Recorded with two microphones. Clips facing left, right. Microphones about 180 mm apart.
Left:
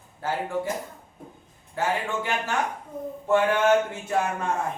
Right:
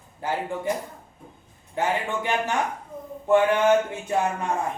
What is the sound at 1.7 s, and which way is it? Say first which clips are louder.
Music: right 1 dB; 20° right (ahead or behind).